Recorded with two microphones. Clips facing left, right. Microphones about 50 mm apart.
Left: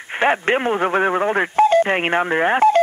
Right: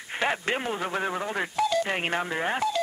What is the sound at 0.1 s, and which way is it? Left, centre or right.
Speech, left.